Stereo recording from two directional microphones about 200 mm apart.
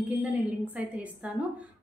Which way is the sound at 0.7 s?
5° right (ahead or behind).